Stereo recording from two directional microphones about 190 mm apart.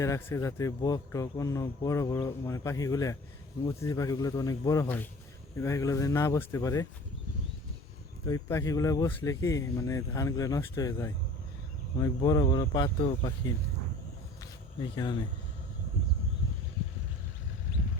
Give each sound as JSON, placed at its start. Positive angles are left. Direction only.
{"t": 0.0, "sound": "speech", "side_deg": 15}
{"t": 8.2, "sound": "speech", "side_deg": 15}
{"t": 14.8, "sound": "speech", "side_deg": 20}